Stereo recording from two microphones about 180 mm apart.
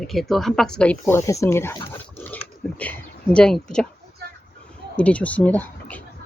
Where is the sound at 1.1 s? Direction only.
15° left (ahead or behind).